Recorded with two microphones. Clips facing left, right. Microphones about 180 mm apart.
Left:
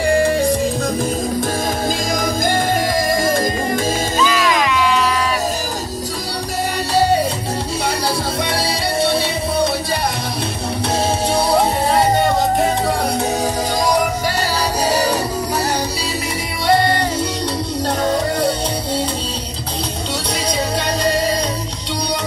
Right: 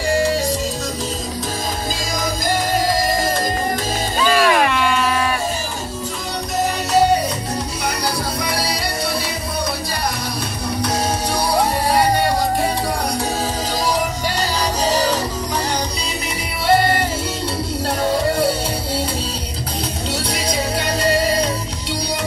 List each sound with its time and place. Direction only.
0.1 s music: 55° left (ahead or behind)
2.1 s music: 55° left (ahead or behind)
4.2 s music: 45° right (ahead or behind)
8.5 s music: 25° left (ahead or behind)
11.3 s music: 25° left (ahead or behind)
14.9 s music: 10° left (ahead or behind)